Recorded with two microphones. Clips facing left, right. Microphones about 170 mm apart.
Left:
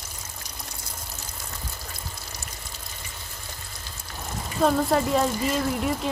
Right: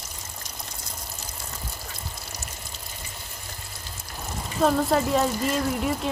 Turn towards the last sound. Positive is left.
turn(degrees=0)  # may be behind; listen again after turning